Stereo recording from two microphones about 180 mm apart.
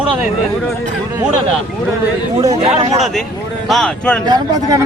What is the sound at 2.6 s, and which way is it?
Speech, 30° right (ahead or behind).